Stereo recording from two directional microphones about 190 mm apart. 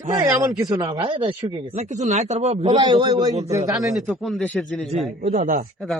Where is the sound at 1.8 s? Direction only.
40° right (ahead or behind); by 3.3 s 20° right (ahead or behind).